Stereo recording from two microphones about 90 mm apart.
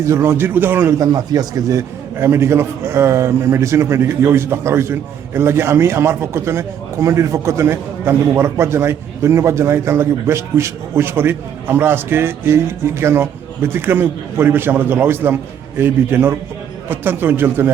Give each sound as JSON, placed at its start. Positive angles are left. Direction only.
{"t": 0.0, "sound": "a man's voice", "side_deg": -30}
{"t": 0.9, "sound": "a man's voice", "side_deg": -45}
{"t": 2.1, "sound": "a man's voice", "side_deg": -30}